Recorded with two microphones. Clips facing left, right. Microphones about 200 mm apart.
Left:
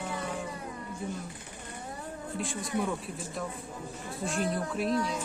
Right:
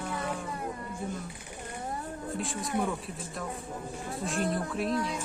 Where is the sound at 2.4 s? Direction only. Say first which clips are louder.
Left 3 dB; centre (ahead or behind).